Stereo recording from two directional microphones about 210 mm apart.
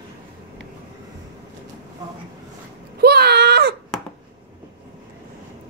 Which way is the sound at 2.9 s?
50° right (ahead or behind).